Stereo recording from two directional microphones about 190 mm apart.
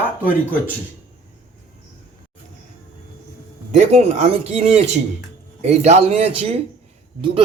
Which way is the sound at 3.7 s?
35° right (ahead or behind).